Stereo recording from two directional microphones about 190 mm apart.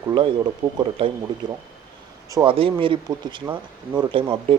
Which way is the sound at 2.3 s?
25° right (ahead or behind).